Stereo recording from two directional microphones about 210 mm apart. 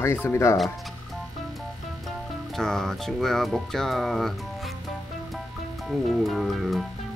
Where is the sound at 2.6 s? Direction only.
Centre (ahead or behind).